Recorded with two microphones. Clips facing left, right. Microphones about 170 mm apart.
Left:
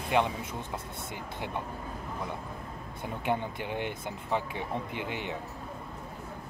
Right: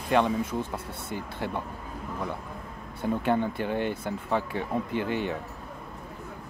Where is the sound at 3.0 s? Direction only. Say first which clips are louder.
Right 6 dB; 15° left (ahead or behind).